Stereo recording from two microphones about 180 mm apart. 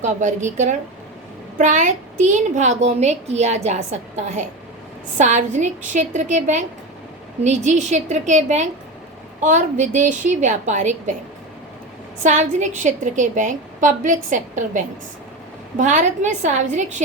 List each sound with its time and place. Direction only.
0.0 s a woman's voice: 45° right (ahead or behind)
12.2 s a woman's voice: 40° right (ahead or behind)